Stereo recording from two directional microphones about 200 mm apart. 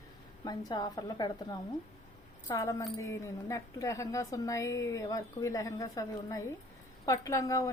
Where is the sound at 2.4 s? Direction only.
15° left (ahead or behind).